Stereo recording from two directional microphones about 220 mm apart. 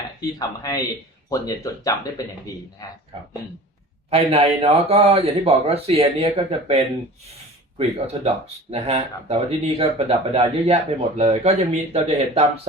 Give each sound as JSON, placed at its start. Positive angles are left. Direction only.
{"t": 0.2, "sound": "speech", "side_deg": 15}
{"t": 4.1, "sound": "speech", "side_deg": -25}
{"t": 7.8, "sound": "speech", "side_deg": -30}